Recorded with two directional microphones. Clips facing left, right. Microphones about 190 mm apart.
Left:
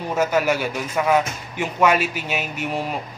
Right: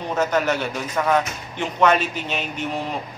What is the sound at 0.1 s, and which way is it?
Speech, 10° left (ahead or behind).